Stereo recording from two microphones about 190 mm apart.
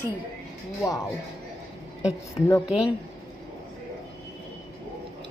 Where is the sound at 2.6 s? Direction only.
5° right (ahead or behind).